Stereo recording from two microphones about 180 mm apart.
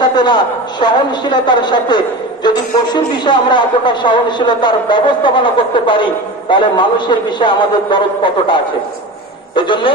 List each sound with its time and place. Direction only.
0.2 s a man's voice: 25° left (ahead or behind)